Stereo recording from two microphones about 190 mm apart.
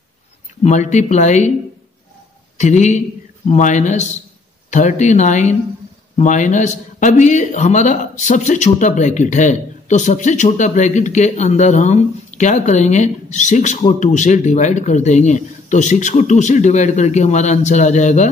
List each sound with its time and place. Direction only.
0.7 s a man's voice: 40° left (ahead or behind)
2.5 s a man's voice: 40° left (ahead or behind)